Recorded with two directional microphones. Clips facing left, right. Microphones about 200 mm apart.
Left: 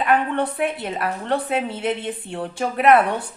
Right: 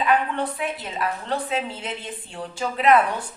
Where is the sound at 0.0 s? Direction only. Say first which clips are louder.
Left 2 dB; 55° left (ahead or behind).